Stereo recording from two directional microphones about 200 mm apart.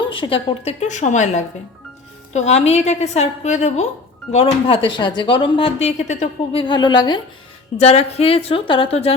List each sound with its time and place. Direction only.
0.1 s speech: 25° left (ahead or behind)